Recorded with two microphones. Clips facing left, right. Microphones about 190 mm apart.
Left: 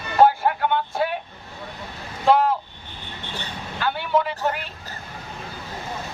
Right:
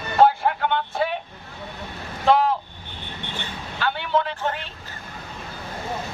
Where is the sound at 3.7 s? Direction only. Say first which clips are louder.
Left 1 dB; 5° left (ahead or behind).